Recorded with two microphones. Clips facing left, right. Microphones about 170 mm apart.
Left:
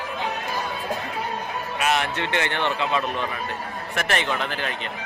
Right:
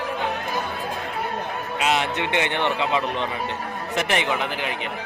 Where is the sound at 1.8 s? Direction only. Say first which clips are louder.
Right 1 dB; 20° right (ahead or behind).